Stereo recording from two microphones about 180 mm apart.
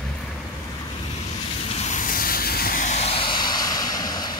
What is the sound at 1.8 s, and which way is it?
Vehicle, 45° left (ahead or behind).